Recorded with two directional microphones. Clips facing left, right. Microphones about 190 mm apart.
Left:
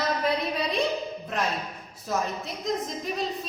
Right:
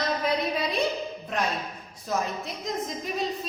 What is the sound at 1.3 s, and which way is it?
Speech, centre (ahead or behind).